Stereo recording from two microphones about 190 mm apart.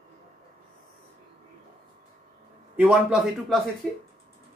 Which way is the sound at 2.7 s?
5° right (ahead or behind).